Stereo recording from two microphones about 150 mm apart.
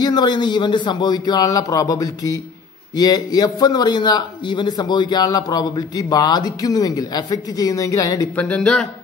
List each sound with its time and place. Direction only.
0.0 s a man's voice: 30° left (ahead or behind)
8.4 s speech: 5° left (ahead or behind)